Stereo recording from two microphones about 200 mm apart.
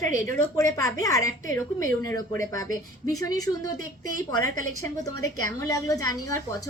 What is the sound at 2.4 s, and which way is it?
Speech, 15° left (ahead or behind).